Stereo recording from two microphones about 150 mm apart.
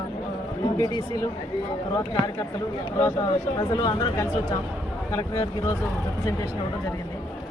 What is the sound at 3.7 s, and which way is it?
Speech, 30° left (ahead or behind).